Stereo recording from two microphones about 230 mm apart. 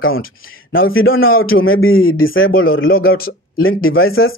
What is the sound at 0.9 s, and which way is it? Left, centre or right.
Speech, left.